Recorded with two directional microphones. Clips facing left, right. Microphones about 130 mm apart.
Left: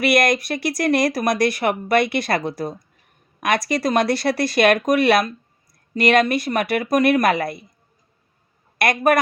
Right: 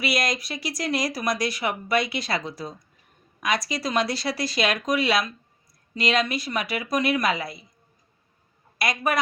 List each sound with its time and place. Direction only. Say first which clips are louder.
0.0 s speech: left 8 dB; 60° left (ahead or behind)
8.8 s speech: left 8 dB; 60° left (ahead or behind)